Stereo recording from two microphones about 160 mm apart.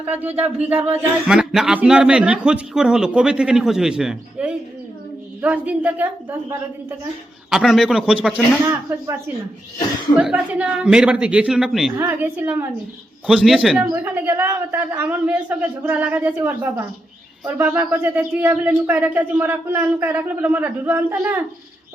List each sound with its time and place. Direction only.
0.2 s a man's voice: 10° right (ahead or behind)
7.5 s a man's voice: 5° right (ahead or behind)
8.6 s speech: 20° right (ahead or behind)
10.2 s a man's voice: 5° right (ahead or behind)
11.9 s speech: 15° right (ahead or behind)
13.2 s a man's voice: centre (ahead or behind)
13.8 s speech: 15° right (ahead or behind)